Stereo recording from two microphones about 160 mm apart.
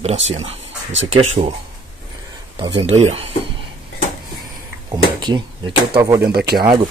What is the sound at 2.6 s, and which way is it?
Speech, 30° right (ahead or behind).